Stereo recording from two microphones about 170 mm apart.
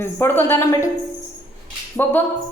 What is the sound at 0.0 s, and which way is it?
Speech, 10° left (ahead or behind).